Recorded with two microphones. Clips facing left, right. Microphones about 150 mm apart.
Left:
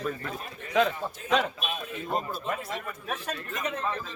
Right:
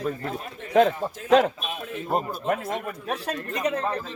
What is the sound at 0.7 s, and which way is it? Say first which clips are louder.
Speech: right 6 dB; 50° right (ahead or behind).